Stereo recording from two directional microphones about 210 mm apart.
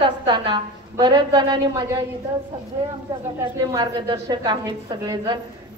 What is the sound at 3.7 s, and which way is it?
Speech, 15° right (ahead or behind).